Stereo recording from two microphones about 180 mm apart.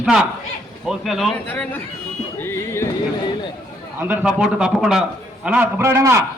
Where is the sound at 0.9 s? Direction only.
Centre (ahead or behind); by 2.9 s 15° left (ahead or behind).